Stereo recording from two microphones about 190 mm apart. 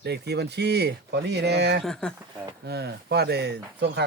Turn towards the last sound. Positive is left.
turn(degrees=-60)  # may be behind; listen again after turning